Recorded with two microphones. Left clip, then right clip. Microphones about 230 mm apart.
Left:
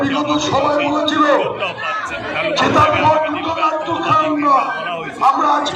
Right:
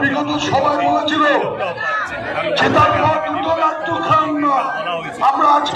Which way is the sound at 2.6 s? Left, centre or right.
Centre.